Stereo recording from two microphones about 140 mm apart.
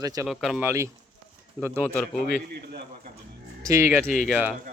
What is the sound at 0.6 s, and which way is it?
Speech, 20° right (ahead or behind).